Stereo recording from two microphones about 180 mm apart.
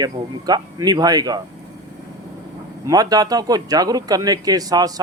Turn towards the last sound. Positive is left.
turn(degrees=-20)  # may be behind; listen again after turning